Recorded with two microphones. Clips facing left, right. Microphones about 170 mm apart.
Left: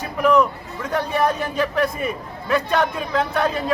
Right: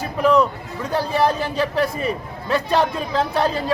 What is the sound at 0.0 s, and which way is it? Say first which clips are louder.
A man's voice: even; 30° right (ahead or behind).